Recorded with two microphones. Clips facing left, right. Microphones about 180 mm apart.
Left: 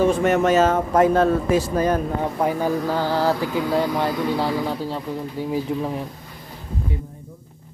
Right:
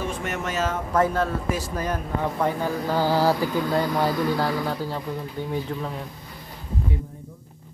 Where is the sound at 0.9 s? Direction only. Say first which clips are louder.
Left 5 dB; 20° left (ahead or behind).